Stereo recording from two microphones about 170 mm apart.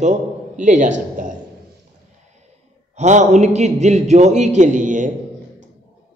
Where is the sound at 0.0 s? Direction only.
45° right (ahead or behind).